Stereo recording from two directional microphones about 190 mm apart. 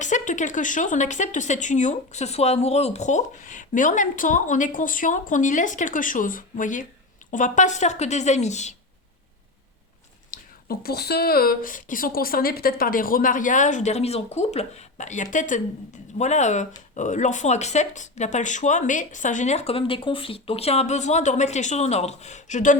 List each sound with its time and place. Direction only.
0.0 s speech: 40° left (ahead or behind)
10.3 s speech: 55° left (ahead or behind)